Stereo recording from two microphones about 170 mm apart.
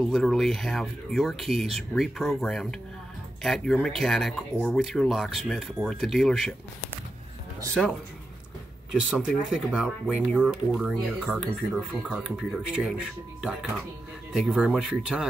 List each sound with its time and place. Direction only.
0.0 s speech: 5° left (ahead or behind)
8.9 s speech: 5° right (ahead or behind)